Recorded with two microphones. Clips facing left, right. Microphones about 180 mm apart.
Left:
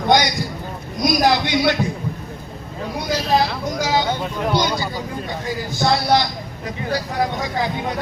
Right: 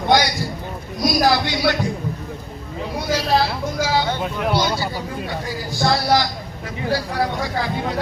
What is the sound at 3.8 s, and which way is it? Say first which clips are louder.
Speech: left 1 dB; 15° left (ahead or behind).